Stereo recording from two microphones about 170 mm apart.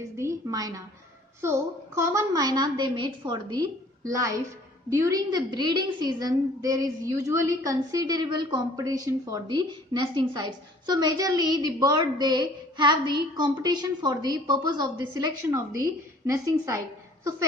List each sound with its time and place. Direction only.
0.2 s a woman's voice: 20° right (ahead or behind)